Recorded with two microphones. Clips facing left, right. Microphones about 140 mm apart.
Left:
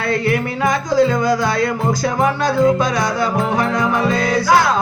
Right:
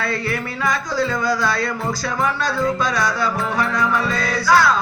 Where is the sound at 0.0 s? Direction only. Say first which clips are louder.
Left 6 dB; 20° left (ahead or behind).